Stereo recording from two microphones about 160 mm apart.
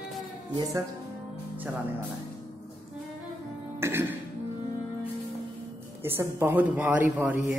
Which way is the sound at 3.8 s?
15° right (ahead or behind).